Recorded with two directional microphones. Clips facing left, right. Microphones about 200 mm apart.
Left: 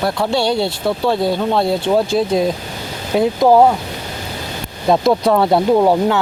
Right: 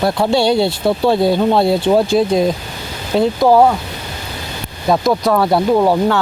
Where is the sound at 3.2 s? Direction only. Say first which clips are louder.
Even; 15° left (ahead or behind).